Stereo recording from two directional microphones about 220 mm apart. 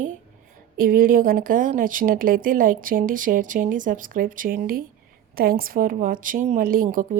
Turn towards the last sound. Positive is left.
turn(degrees=-40)  # may be behind; listen again after turning